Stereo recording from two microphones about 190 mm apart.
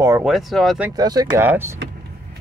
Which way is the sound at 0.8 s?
20° right (ahead or behind).